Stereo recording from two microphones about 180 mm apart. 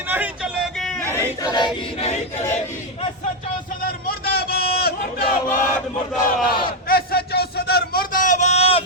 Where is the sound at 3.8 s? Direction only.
55° left (ahead or behind).